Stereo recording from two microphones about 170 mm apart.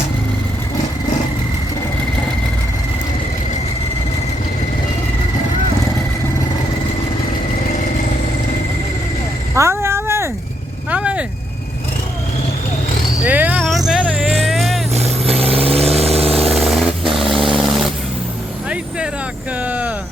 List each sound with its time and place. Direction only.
9.6 s a sound: 15° right (ahead or behind)
10.9 s vehicle: 5° right (ahead or behind)
13.2 s vehicle: 10° right (ahead or behind)
15.4 s vehicle: 35° right (ahead or behind)
16.6 s vehicle: centre (ahead or behind)
19.6 s vehicle: 10° right (ahead or behind)